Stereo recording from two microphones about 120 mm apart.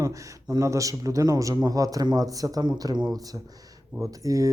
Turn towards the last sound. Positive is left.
turn(degrees=-25)  # may be behind; listen again after turning